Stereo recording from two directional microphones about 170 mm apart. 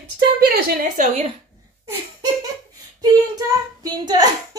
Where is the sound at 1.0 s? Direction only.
35° right (ahead or behind).